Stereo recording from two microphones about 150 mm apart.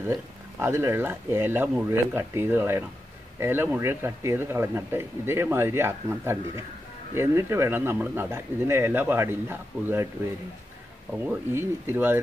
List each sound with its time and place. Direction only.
0.1 s speech: 15° right (ahead or behind)
11.5 s speech: 15° right (ahead or behind)